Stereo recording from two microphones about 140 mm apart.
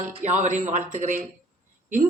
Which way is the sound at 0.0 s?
60° right (ahead or behind).